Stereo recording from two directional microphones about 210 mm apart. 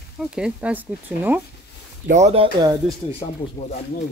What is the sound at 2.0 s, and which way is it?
Speech, 35° right (ahead or behind).